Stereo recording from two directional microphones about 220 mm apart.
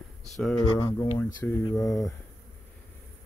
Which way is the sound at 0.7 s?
15° left (ahead or behind).